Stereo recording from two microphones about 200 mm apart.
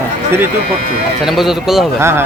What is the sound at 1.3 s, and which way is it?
Speech, centre (ahead or behind).